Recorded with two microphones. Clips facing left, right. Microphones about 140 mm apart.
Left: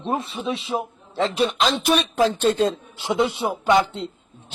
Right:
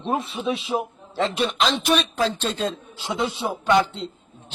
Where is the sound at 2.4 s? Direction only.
50° left (ahead or behind).